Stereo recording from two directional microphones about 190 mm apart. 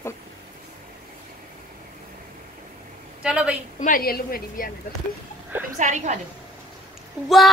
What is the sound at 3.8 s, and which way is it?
Speech, 50° left (ahead or behind).